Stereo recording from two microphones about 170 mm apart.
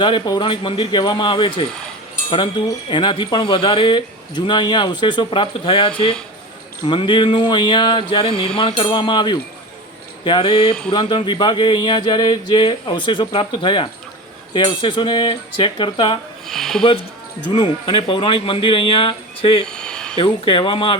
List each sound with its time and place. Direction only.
0.0 s speech: 30° left (ahead or behind)
16.5 s speech: centre (ahead or behind)
17.5 s speech: 30° left (ahead or behind)
19.6 s a sound: 5° left (ahead or behind)
20.1 s speech: 30° left (ahead or behind)